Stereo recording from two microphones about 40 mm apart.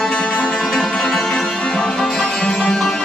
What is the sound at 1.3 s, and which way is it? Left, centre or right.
Music, left.